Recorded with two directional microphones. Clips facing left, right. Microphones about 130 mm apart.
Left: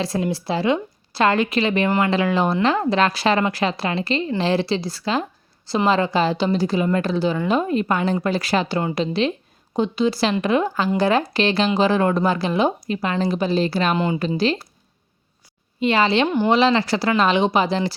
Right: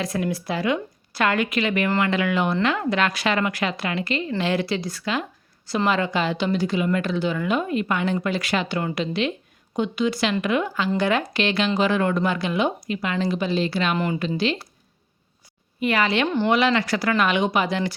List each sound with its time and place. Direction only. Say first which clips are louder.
0.0 s a woman's voice: left 2 dB; 30° left (ahead or behind)
13.9 s a woman's voice: left 3 dB; 25° left (ahead or behind)
14.2 s a woman's voice: left 3 dB; 40° left (ahead or behind)
15.8 s a woman's voice: left 4 dB; 25° left (ahead or behind)